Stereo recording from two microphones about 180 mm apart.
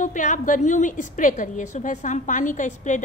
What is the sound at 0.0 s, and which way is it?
A woman's voice, 45° left (ahead or behind).